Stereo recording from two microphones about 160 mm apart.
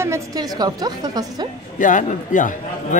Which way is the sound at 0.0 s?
20° right (ahead or behind).